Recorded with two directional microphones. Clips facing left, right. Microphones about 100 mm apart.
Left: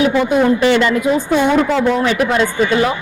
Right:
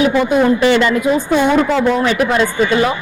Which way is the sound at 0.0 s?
20° right (ahead or behind).